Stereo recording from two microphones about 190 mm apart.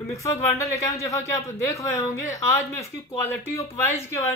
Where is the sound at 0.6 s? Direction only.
15° left (ahead or behind).